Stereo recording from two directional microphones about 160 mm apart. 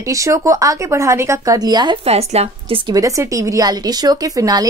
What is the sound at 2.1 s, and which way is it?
Speech, 40° right (ahead or behind).